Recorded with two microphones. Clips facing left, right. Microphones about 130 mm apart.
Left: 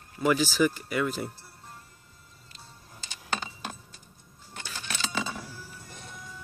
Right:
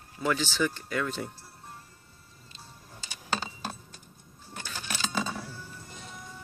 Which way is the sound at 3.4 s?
35° right (ahead or behind).